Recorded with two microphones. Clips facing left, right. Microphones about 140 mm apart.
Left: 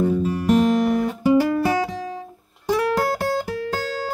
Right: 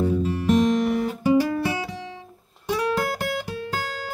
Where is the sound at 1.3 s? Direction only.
45° left (ahead or behind).